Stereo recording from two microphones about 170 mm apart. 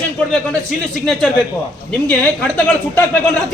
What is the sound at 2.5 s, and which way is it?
Speech, 10° left (ahead or behind).